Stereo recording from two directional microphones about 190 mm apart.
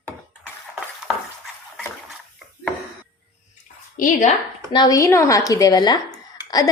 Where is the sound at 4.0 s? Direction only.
45° left (ahead or behind).